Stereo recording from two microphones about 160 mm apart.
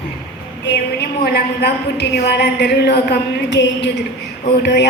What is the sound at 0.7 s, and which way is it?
A woman's voice, 85° left.